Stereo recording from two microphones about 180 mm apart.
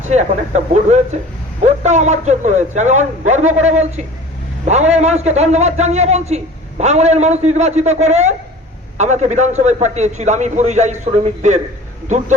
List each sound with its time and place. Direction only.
0.1 s a man's voice: 40° right (ahead or behind)